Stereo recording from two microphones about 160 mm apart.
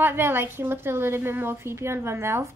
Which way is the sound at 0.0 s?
15° right (ahead or behind).